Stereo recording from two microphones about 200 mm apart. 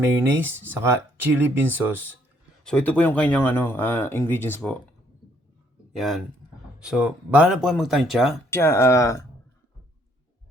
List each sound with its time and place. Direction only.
0.0 s speech: 10° right (ahead or behind)
2.6 s speech: 5° left (ahead or behind)
5.9 s speech: centre (ahead or behind)
8.4 s speech: 15° left (ahead or behind)